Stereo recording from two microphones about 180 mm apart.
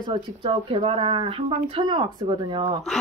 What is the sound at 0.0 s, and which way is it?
Speech, 25° right (ahead or behind).